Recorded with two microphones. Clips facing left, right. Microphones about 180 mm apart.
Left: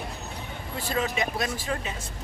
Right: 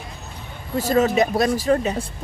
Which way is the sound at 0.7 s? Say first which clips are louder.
Right 11 dB; 40° right (ahead or behind).